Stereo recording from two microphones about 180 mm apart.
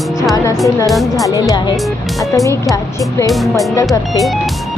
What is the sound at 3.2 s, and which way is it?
Speech, centre (ahead or behind).